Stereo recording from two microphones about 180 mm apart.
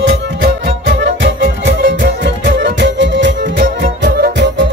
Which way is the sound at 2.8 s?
85° right.